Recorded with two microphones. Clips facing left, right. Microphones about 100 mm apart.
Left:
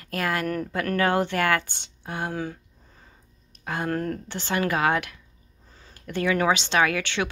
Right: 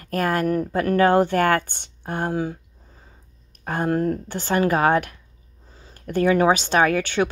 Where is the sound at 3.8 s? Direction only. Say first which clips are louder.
Right 6 dB; 25° right (ahead or behind).